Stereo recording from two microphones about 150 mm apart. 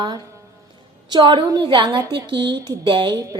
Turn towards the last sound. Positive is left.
turn(degrees=-30)  # may be behind; listen again after turning